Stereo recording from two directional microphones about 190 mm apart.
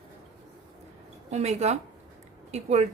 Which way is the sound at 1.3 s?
35° right (ahead or behind).